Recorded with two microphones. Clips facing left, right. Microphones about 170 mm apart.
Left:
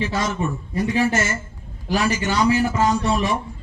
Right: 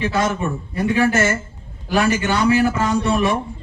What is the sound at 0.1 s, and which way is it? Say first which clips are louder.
A man's voice: right 3 dB; 55° right (ahead or behind).